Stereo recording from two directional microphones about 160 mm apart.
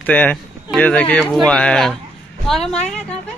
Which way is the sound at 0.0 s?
10° left (ahead or behind).